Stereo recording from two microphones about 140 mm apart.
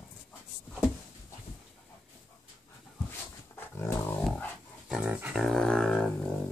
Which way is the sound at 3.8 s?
15° left (ahead or behind).